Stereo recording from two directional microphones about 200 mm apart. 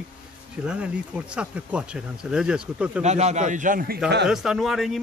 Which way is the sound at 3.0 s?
35° right (ahead or behind).